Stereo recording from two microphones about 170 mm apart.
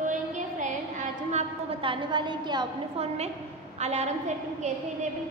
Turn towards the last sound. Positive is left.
turn(degrees=-40)  # may be behind; listen again after turning